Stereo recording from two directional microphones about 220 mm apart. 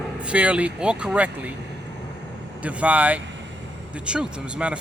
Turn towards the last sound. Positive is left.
turn(degrees=-5)  # may be behind; listen again after turning